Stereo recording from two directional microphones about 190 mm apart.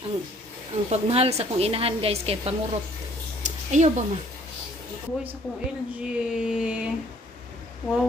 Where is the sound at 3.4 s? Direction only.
40° right (ahead or behind).